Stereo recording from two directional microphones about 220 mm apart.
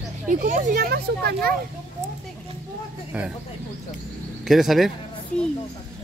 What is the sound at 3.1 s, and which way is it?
Speech, 5° right (ahead or behind).